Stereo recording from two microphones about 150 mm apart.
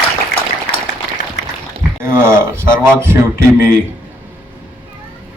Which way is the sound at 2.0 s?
15° right (ahead or behind).